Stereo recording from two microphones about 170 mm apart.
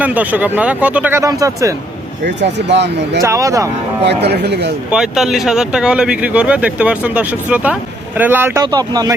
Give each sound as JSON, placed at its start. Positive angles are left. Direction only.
{"t": 0.0, "sound": "speech", "side_deg": -10}
{"t": 2.2, "sound": "speech", "side_deg": -90}
{"t": 3.2, "sound": "speech", "side_deg": -20}
{"t": 4.0, "sound": "speech", "side_deg": -80}
{"t": 4.9, "sound": "speech", "side_deg": -5}
{"t": 8.6, "sound": "speech", "side_deg": -25}